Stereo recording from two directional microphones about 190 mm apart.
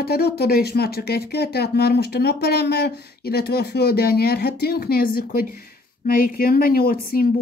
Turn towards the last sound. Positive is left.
turn(degrees=50)  # may be behind; listen again after turning